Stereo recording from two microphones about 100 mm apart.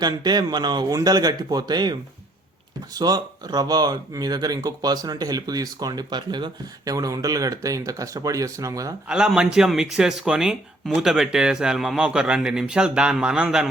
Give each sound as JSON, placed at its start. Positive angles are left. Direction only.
{"t": 0.0, "sound": "speech", "side_deg": -45}
{"t": 9.0, "sound": "speech", "side_deg": -5}